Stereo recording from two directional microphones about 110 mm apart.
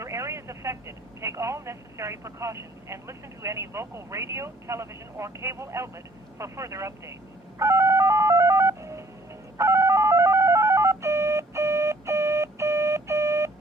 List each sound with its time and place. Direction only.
0.0 s speech: 25° right (ahead or behind)
7.6 s telephone dialing: 25° right (ahead or behind)
9.6 s telephone: 25° right (ahead or behind)